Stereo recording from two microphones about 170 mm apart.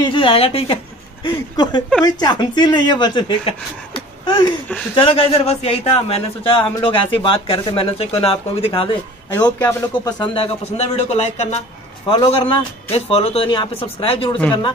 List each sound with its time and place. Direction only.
0.0 s a man's voice: 30° left (ahead or behind)
9.3 s a man's voice: 25° left (ahead or behind)